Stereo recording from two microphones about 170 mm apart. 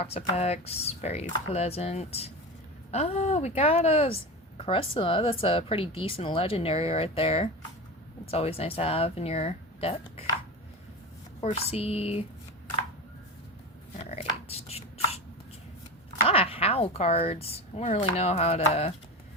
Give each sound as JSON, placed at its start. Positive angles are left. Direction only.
{"t": 0.0, "sound": "a woman's voice", "side_deg": 40}
{"t": 11.4, "sound": "a woman's voice", "side_deg": 35}
{"t": 13.9, "sound": "chopping", "side_deg": 40}
{"t": 16.2, "sound": "a woman's voice", "side_deg": 35}